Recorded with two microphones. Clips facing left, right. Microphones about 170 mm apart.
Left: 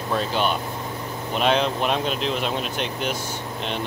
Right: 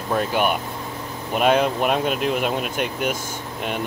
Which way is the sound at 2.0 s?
55° right (ahead or behind).